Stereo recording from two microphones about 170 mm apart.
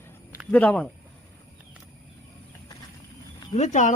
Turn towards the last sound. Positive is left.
turn(degrees=45)  # may be behind; listen again after turning